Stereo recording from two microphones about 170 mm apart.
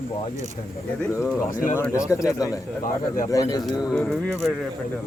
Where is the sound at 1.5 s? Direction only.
50° left (ahead or behind).